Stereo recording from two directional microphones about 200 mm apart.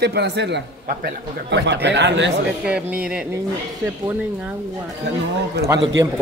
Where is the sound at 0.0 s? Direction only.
55° right (ahead or behind).